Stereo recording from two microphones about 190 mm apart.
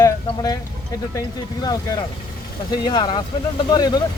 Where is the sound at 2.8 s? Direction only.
25° left (ahead or behind).